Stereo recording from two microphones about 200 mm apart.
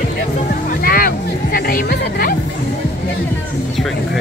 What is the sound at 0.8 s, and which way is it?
Music, 45° left (ahead or behind).